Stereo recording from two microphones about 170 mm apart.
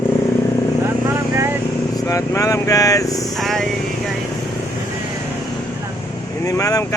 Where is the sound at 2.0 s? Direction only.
20° left (ahead or behind).